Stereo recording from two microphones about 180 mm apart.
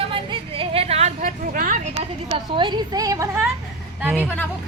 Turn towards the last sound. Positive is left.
turn(degrees=-10)  # may be behind; listen again after turning